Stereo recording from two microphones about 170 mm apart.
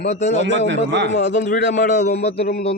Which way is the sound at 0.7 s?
90° right.